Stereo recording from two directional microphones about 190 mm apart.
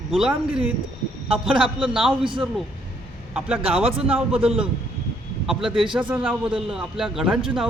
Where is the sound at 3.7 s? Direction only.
30° right (ahead or behind).